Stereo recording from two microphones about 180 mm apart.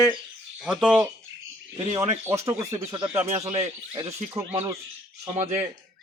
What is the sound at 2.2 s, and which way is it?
Speech, 15° right (ahead or behind).